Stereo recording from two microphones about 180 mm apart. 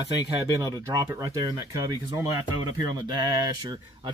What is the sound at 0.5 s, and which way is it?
Speech, 20° right (ahead or behind).